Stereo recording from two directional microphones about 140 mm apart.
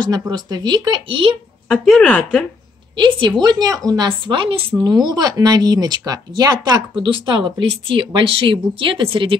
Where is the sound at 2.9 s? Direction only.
35° right (ahead or behind).